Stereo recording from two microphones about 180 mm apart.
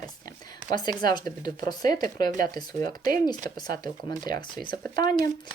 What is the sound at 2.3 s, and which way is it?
Speech, 50° right (ahead or behind).